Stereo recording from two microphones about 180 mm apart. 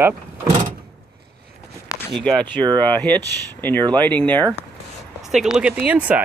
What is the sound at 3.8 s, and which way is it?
Speech, 25° right (ahead or behind).